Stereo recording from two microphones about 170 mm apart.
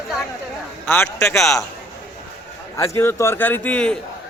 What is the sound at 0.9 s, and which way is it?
Speech, 15° left (ahead or behind).